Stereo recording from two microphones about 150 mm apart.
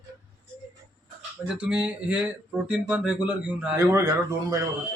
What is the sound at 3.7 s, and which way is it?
Speech, 20° right (ahead or behind).